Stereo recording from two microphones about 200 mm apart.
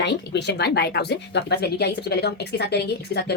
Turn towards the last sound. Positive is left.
turn(degrees=55)  # may be behind; listen again after turning